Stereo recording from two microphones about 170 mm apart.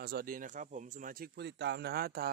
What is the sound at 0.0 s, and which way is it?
Speech, 65° right (ahead or behind).